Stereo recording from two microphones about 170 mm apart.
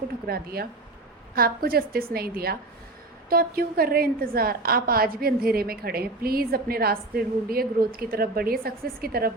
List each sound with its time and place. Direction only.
0.3 s a woman's voice: 65° right (ahead or behind)